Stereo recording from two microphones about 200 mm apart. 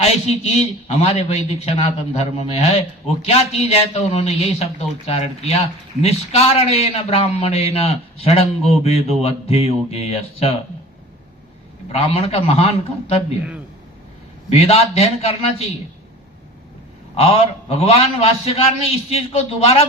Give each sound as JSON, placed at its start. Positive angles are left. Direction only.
{"t": 0.0, "sound": "a man's voice", "side_deg": 30}
{"t": 11.9, "sound": "a man's voice", "side_deg": 30}
{"t": 14.5, "sound": "a man's voice", "side_deg": 30}
{"t": 17.2, "sound": "a man's voice", "side_deg": 30}